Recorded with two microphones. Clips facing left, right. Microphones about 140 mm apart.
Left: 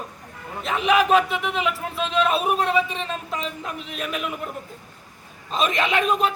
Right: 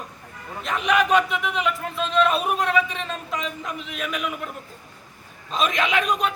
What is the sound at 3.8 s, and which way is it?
Speech, 40° left (ahead or behind).